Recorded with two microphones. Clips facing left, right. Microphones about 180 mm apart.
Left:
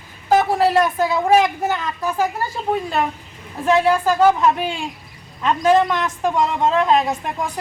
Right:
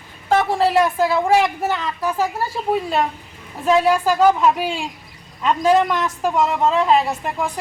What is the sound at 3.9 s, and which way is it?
A woman's voice, 10° right (ahead or behind).